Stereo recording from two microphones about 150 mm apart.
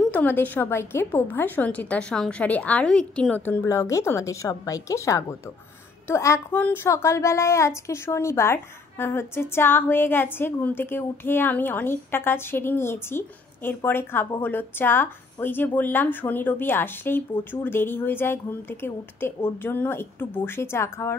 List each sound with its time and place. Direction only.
0.1 s a woman's voice: 10° left (ahead or behind)